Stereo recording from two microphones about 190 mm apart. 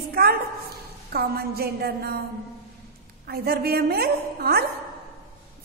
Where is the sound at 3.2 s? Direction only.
55° right (ahead or behind).